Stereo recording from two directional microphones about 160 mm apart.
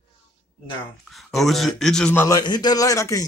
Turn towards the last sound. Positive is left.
turn(degrees=20)  # may be behind; listen again after turning